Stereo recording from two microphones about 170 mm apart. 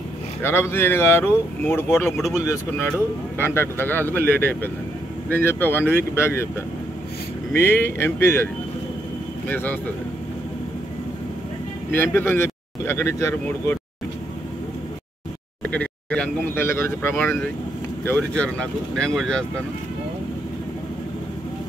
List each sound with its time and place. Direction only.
0.4 s speech: 15° left (ahead or behind)
7.5 s speech: 15° left (ahead or behind)
9.5 s speech: 10° left (ahead or behind)
12.0 s speech: 10° left (ahead or behind)
15.6 s speech: 10° left (ahead or behind)